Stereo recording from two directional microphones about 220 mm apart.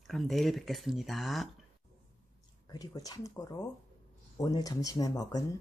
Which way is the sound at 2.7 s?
15° left (ahead or behind).